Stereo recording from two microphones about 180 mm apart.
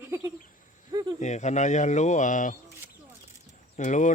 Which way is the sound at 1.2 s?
40° left (ahead or behind).